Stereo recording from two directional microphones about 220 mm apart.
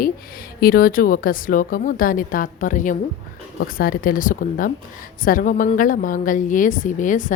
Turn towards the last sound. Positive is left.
turn(degrees=35)  # may be behind; listen again after turning